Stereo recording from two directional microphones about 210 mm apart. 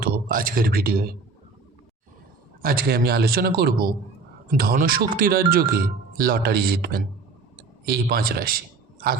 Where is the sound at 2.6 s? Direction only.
45° right (ahead or behind).